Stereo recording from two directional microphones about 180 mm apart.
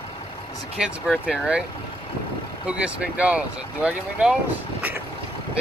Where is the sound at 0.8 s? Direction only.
5° right (ahead or behind).